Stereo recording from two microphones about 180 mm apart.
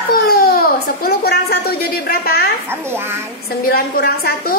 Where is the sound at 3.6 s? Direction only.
55° left (ahead or behind).